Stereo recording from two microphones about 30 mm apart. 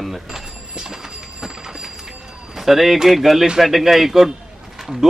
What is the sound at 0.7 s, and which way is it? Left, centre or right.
Train, centre.